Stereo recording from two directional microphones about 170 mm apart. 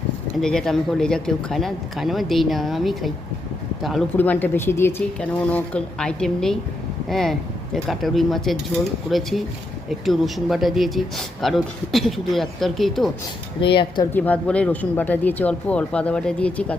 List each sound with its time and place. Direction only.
0.4 s speech: 5° left (ahead or behind)
4.2 s speech: 10° left (ahead or behind)
13.6 s speech: 30° left (ahead or behind)
14.1 s speech: 10° left (ahead or behind)